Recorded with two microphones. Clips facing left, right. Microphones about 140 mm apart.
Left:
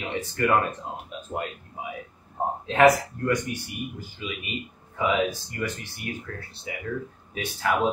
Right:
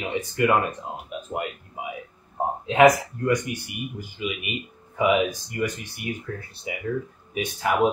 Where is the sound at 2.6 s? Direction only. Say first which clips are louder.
Right 2 dB; 15° right (ahead or behind).